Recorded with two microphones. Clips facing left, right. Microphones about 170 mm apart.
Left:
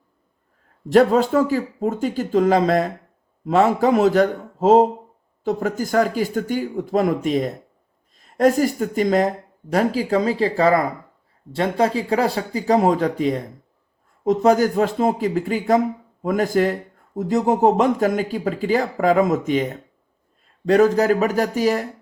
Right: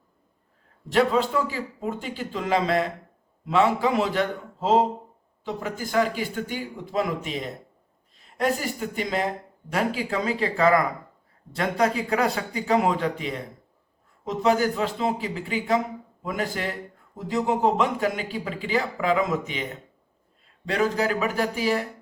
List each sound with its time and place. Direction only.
0.9 s speech: 45° left (ahead or behind)
20.7 s speech: 45° left (ahead or behind)